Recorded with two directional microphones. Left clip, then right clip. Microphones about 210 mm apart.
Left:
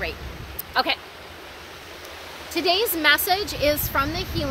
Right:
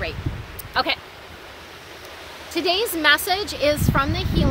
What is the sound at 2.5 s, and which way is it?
Speech, 15° right (ahead or behind).